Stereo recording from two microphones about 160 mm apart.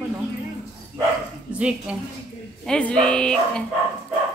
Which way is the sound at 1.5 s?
5° right (ahead or behind).